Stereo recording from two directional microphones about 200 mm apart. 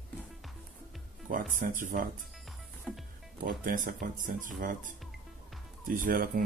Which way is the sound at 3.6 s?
45° right (ahead or behind).